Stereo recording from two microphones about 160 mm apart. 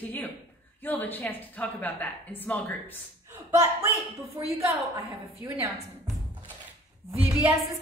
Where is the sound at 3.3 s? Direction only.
15° right (ahead or behind).